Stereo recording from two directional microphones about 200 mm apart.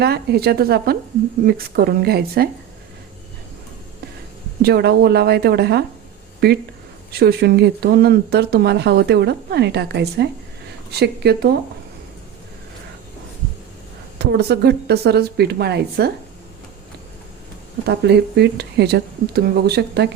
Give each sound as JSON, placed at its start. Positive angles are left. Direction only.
{"t": 0.0, "sound": "speech", "side_deg": -50}
{"t": 4.6, "sound": "speech", "side_deg": -55}
{"t": 14.2, "sound": "speech", "side_deg": -55}
{"t": 17.8, "sound": "speech", "side_deg": -55}